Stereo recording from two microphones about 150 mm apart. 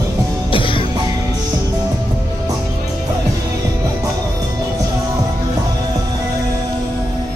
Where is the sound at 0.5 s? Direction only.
35° left (ahead or behind).